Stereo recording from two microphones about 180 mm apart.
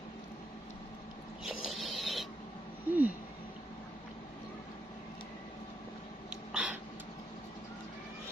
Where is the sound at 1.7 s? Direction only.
Centre (ahead or behind).